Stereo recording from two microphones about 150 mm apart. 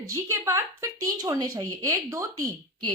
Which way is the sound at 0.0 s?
20° right (ahead or behind).